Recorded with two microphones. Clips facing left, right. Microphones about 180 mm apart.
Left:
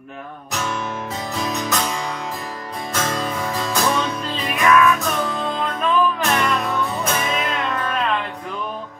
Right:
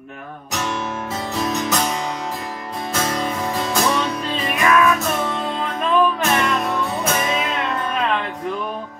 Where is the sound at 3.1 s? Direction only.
20° right (ahead or behind).